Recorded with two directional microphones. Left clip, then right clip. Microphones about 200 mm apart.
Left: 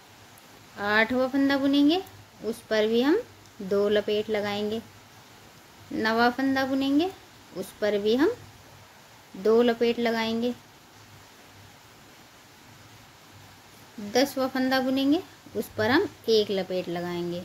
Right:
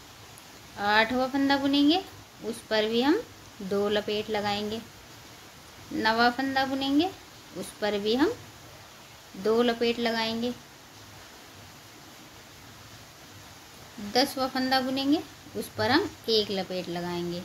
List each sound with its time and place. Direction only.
0.7 s speech: 30° left (ahead or behind)
5.9 s speech: 30° left (ahead or behind)
9.4 s a woman's voice: 30° left (ahead or behind)
14.1 s a woman's voice: 35° left (ahead or behind)